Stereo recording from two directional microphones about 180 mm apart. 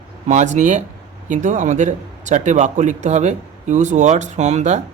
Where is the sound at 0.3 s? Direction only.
40° right (ahead or behind).